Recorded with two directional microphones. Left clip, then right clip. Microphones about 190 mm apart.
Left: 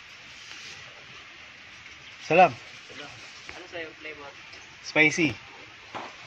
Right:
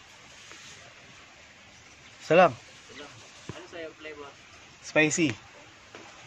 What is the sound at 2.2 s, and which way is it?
Speech, 10° right (ahead or behind).